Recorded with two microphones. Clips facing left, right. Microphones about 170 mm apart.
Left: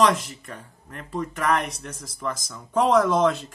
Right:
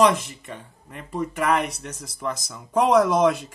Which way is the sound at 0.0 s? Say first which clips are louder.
Right 2 dB; centre (ahead or behind).